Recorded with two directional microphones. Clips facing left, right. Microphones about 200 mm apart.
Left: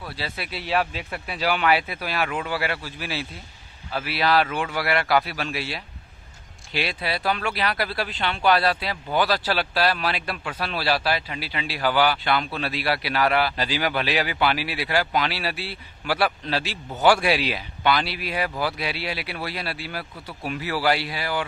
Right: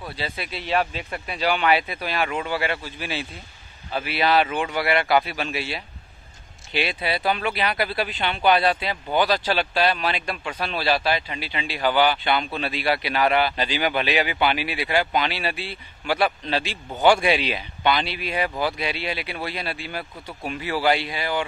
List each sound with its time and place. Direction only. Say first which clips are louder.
0.1 s speech: right 1 dB; 5° left (ahead or behind)
7.9 s speech: right 2 dB; 20° right (ahead or behind)
8.5 s speech: right 2 dB; centre (ahead or behind)